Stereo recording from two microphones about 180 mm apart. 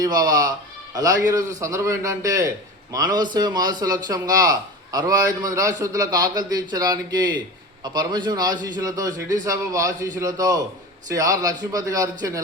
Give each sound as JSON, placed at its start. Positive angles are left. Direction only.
{"t": 0.0, "sound": "a man's voice", "side_deg": -20}